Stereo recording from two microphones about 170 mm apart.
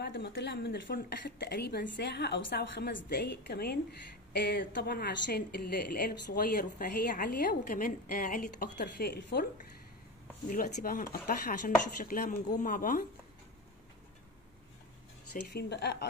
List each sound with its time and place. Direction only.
0.0 s a woman's voice: 80° left
10.5 s a woman's voice: 55° left (ahead or behind)
15.5 s a woman's voice: 80° left